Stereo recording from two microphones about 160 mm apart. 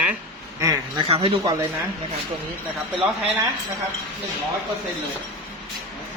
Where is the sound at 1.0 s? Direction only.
35° right (ahead or behind).